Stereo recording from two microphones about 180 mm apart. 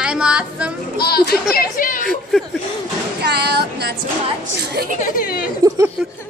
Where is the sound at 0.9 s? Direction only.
60° left (ahead or behind).